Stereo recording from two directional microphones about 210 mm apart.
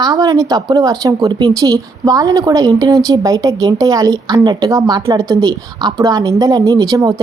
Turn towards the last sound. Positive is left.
turn(degrees=-20)  # may be behind; listen again after turning